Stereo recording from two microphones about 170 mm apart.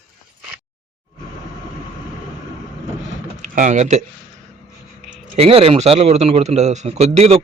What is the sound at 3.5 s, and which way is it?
Speech, 45° right (ahead or behind).